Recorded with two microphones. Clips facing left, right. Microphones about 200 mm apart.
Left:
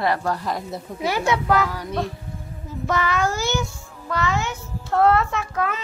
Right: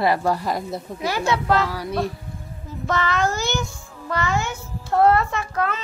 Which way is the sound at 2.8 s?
10° left (ahead or behind).